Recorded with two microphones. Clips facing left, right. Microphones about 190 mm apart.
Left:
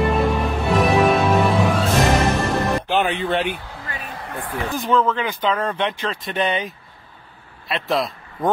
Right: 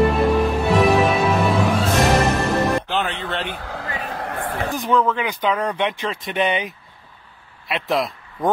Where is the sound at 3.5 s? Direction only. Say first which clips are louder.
Right 4 dB; 90° right.